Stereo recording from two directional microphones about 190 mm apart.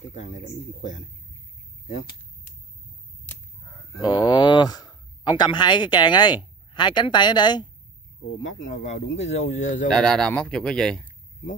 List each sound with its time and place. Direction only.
4.0 s speech: 20° left (ahead or behind)
8.4 s speech: 40° left (ahead or behind)
9.8 s speech: centre (ahead or behind)